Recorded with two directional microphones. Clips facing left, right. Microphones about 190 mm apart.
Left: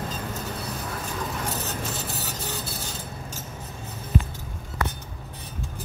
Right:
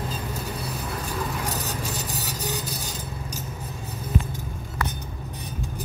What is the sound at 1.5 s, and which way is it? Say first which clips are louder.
Vehicle: right 1 dB; 35° right (ahead or behind).